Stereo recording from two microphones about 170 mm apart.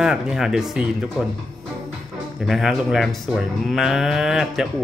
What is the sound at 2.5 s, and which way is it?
A man's voice, centre (ahead or behind).